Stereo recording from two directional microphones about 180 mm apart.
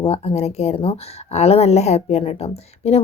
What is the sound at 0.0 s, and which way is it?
Speech, 35° left (ahead or behind).